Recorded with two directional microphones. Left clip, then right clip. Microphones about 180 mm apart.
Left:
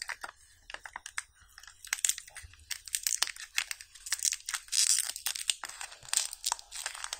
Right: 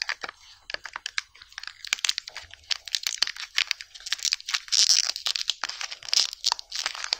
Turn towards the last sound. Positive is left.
turn(degrees=-15)  # may be behind; listen again after turning